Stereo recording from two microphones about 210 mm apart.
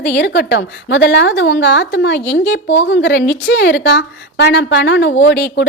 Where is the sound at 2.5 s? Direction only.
60° left (ahead or behind).